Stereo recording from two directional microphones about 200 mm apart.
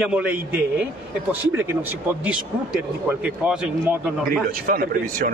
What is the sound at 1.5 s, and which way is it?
A man's voice, 10° right (ahead or behind).